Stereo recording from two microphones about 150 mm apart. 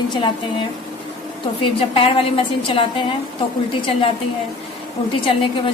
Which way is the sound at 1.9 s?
40° left (ahead or behind).